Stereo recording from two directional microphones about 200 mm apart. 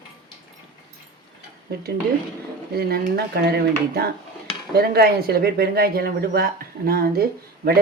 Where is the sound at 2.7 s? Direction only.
50° right (ahead or behind).